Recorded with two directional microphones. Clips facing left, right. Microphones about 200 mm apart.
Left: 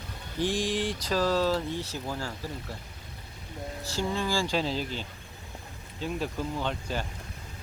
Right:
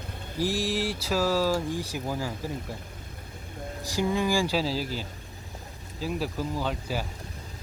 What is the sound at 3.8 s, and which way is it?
Speech, 15° right (ahead or behind).